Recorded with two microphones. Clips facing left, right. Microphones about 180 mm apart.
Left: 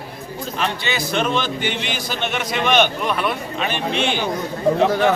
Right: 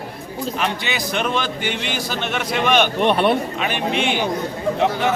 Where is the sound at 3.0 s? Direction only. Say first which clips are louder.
Right 6 dB; 30° right (ahead or behind).